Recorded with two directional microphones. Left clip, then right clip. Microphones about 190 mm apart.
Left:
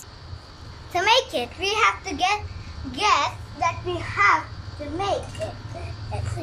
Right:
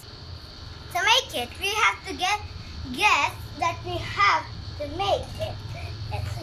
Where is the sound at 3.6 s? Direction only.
20° right (ahead or behind).